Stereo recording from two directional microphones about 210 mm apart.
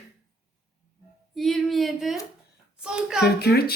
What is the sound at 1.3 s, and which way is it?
A woman's voice, centre (ahead or behind).